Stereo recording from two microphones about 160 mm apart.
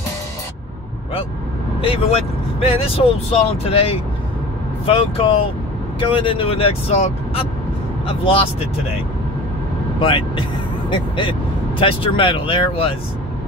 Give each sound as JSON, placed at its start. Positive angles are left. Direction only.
{"t": 1.8, "sound": "speech", "side_deg": 40}
{"t": 9.9, "sound": "speech", "side_deg": 35}